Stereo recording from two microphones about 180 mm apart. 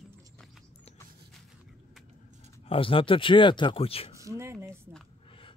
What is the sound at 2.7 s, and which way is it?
Speech, 30° left (ahead or behind).